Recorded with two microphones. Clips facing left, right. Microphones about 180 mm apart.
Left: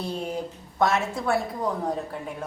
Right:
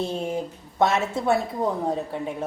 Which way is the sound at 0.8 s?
25° right (ahead or behind).